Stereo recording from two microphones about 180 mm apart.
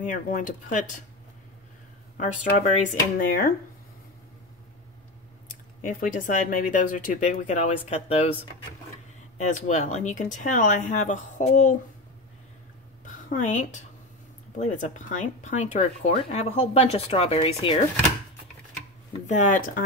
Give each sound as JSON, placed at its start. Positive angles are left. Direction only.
{"t": 0.0, "sound": "speech", "side_deg": 50}
{"t": 2.1, "sound": "speech", "side_deg": 45}
{"t": 5.5, "sound": "speech", "side_deg": 45}
{"t": 9.4, "sound": "speech", "side_deg": 40}
{"t": 13.0, "sound": "a sound", "side_deg": 45}
{"t": 14.6, "sound": "speech", "side_deg": 45}
{"t": 19.2, "sound": "speech", "side_deg": 45}